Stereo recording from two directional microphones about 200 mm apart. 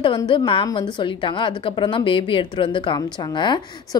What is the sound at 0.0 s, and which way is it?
A woman's voice, 25° left (ahead or behind).